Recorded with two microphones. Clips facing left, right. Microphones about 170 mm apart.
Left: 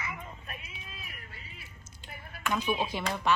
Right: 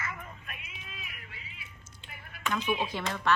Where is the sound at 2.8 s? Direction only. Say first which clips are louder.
Left 1 dB; 10° left (ahead or behind).